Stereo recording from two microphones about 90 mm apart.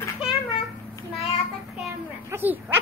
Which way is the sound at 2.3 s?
20° right (ahead or behind).